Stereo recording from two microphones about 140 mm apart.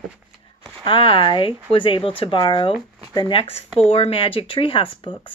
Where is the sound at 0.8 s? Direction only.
40° left (ahead or behind).